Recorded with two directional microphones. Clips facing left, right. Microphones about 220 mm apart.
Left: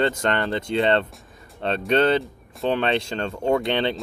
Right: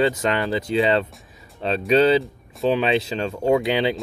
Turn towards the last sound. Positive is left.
turn(degrees=-5)  # may be behind; listen again after turning